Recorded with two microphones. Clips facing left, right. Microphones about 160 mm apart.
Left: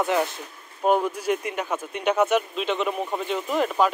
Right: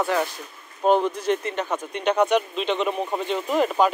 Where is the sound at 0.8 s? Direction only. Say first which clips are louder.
Right 2 dB; 5° left (ahead or behind).